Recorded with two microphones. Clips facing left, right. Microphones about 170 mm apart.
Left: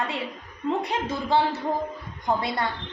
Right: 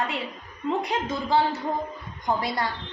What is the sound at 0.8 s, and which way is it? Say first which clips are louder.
A woman's voice: even; 25° left (ahead or behind).